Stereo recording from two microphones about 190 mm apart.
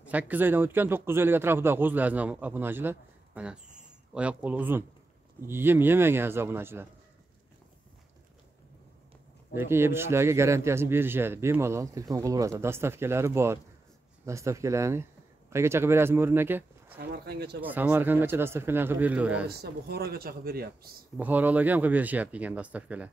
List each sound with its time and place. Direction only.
0.0 s a man's voice: 10° right (ahead or behind)
9.5 s a man's voice: 10° right (ahead or behind)
17.1 s speech: 60° right (ahead or behind)
17.6 s a man's voice: 10° right (ahead or behind)
19.4 s speech: 55° right (ahead or behind)
21.2 s a man's voice: 10° right (ahead or behind)